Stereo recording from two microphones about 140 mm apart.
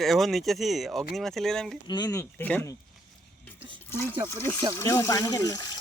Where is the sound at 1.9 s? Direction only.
25° left (ahead or behind).